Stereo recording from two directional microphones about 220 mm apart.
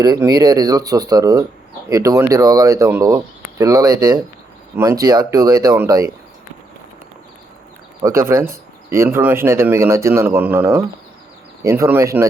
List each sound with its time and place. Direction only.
0.0 s speech: 15° right (ahead or behind)
8.0 s speech: 10° right (ahead or behind)